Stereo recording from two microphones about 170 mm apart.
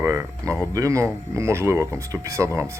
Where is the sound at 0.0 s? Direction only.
15° right (ahead or behind).